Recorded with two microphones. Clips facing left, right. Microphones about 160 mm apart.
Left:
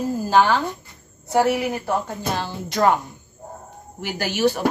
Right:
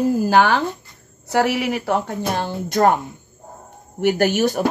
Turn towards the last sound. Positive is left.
turn(degrees=-45)  # may be behind; listen again after turning